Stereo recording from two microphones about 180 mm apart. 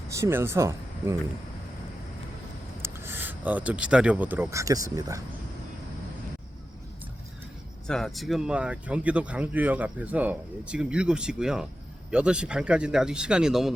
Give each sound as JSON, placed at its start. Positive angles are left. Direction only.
{"t": 0.1, "sound": "speech", "side_deg": -15}
{"t": 2.8, "sound": "speech", "side_deg": -15}
{"t": 7.9, "sound": "speech", "side_deg": 0}